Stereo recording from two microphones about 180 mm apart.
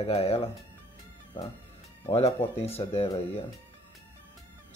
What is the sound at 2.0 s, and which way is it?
Speech, 35° left (ahead or behind).